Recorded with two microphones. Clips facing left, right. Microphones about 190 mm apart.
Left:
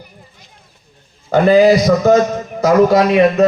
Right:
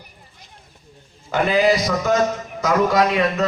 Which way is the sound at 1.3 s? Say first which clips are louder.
Left 8 dB; 40° left (ahead or behind).